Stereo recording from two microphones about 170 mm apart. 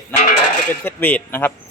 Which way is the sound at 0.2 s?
45° left (ahead or behind).